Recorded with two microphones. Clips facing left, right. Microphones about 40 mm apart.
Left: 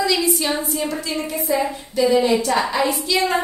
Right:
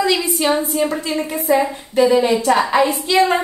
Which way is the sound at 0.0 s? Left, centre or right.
Right.